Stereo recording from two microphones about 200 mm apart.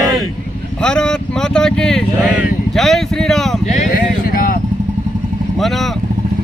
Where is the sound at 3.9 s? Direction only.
45° left (ahead or behind).